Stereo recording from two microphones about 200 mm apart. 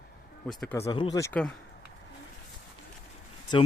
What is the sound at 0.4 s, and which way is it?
Speech, centre (ahead or behind).